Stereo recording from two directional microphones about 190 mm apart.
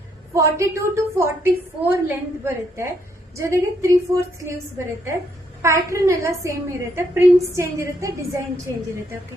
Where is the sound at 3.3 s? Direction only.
15° right (ahead or behind).